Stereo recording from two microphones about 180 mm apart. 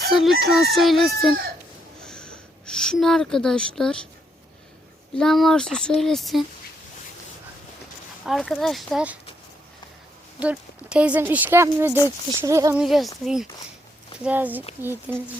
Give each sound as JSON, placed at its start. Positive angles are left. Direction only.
{"t": 0.1, "sound": "speech", "side_deg": 0}
{"t": 2.0, "sound": "a sound", "side_deg": 5}
{"t": 5.1, "sound": "speech", "side_deg": 0}
{"t": 8.2, "sound": "speech", "side_deg": 0}
{"t": 10.4, "sound": "speech", "side_deg": -5}
{"t": 12.8, "sound": "speech", "side_deg": 0}